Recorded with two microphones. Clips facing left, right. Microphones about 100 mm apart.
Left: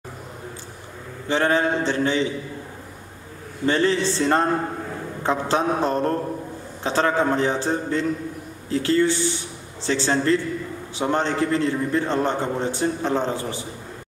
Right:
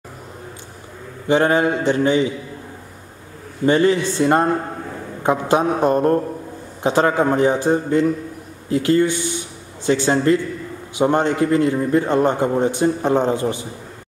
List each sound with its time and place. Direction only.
1.3 s a man's voice: 15° right (ahead or behind)
3.6 s a man's voice: 15° right (ahead or behind)